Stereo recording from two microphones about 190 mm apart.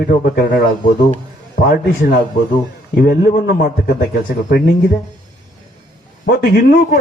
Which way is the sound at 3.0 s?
55° left (ahead or behind).